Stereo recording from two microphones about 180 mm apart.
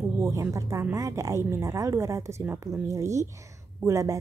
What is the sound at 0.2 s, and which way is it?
A woman's voice, 15° right (ahead or behind).